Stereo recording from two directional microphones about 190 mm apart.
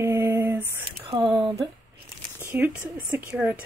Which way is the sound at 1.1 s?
25° right (ahead or behind).